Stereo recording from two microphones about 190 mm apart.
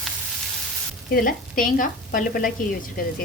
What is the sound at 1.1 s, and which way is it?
Speech, 50° left (ahead or behind).